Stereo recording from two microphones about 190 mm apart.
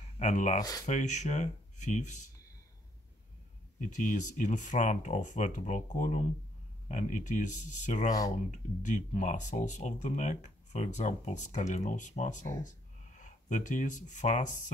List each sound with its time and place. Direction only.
0.2 s speech: 40° left (ahead or behind)
0.6 s speech: 20° left (ahead or behind)
0.8 s speech: 40° left (ahead or behind)
3.8 s speech: 40° left (ahead or behind)